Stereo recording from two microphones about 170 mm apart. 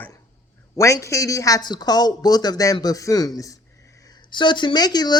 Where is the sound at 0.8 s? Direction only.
20° left (ahead or behind).